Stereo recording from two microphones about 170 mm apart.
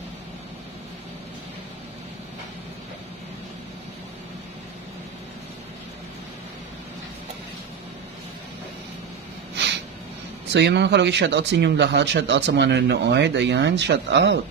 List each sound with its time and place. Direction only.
10.5 s speech: 90° right